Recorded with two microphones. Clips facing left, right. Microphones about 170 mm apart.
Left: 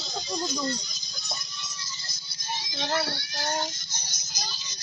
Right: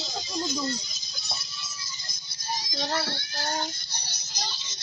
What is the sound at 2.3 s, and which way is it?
Music, 35° right (ahead or behind).